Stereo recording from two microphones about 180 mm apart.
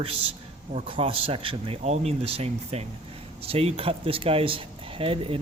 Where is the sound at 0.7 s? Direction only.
35° right (ahead or behind).